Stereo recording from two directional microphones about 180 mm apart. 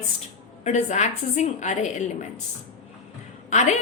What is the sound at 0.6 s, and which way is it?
A woman's voice, 40° left (ahead or behind).